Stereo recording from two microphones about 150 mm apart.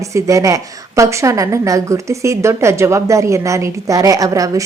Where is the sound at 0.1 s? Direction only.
20° right (ahead or behind).